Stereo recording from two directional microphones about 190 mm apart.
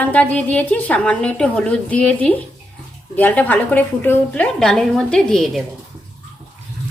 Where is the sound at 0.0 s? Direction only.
5° left (ahead or behind).